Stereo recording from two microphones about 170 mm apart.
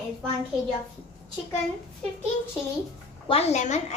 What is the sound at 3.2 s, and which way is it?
Speech, 35° left (ahead or behind).